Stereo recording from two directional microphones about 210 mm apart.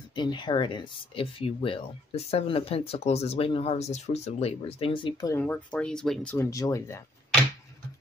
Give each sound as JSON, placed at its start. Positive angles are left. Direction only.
{"t": 0.1, "sound": "speech", "side_deg": 20}
{"t": 5.4, "sound": "speech", "side_deg": 5}
{"t": 6.3, "sound": "speech", "side_deg": 15}